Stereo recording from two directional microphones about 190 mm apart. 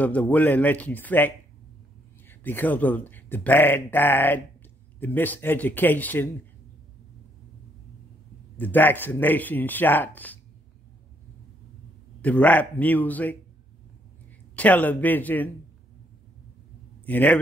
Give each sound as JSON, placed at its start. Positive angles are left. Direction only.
{"t": 0.0, "sound": "speech", "side_deg": 10}
{"t": 8.5, "sound": "speech", "side_deg": 10}
{"t": 12.2, "sound": "speech", "side_deg": 10}
{"t": 14.5, "sound": "speech", "side_deg": 10}
{"t": 17.0, "sound": "a man's voice", "side_deg": 10}